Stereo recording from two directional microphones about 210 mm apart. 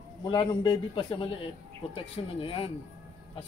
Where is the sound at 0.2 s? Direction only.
20° left (ahead or behind).